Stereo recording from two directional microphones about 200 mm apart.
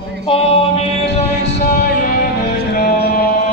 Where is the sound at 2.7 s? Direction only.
50° left (ahead or behind).